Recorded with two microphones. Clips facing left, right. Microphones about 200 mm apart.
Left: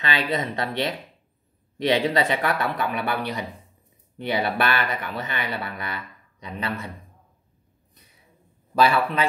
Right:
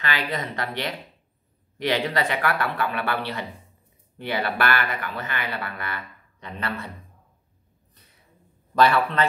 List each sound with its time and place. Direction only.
0.0 s speech: 20° left (ahead or behind)
8.7 s speech: 10° left (ahead or behind)